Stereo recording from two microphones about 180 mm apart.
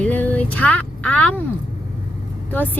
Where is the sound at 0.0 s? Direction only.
10° left (ahead or behind).